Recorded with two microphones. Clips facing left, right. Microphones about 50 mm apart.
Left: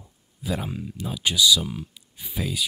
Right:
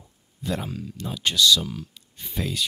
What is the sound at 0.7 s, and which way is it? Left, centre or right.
Speech, centre.